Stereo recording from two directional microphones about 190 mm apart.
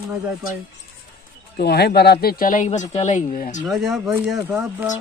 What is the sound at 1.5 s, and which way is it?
Speech, 60° left (ahead or behind).